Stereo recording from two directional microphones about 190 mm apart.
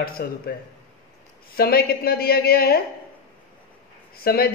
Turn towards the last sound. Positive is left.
turn(degrees=50)  # may be behind; listen again after turning